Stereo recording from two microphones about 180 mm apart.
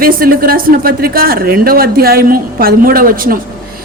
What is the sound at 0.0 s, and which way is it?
Speech, 55° right (ahead or behind).